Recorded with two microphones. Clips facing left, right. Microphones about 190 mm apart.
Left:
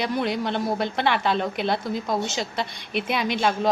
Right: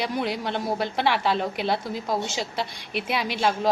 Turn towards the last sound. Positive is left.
turn(degrees=-5)  # may be behind; listen again after turning